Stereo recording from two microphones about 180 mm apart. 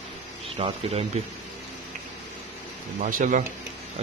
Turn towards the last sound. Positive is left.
turn(degrees=-45)  # may be behind; listen again after turning